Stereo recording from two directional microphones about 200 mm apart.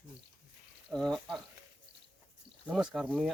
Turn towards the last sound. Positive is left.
turn(degrees=0)  # may be behind; listen again after turning